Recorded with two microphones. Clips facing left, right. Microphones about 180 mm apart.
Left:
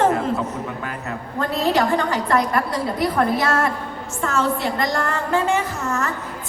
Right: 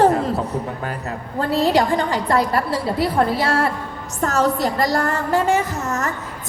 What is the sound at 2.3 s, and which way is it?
A woman's voice, 30° right (ahead or behind).